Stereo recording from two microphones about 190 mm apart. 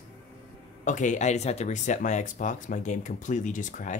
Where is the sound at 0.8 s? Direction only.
40° left (ahead or behind).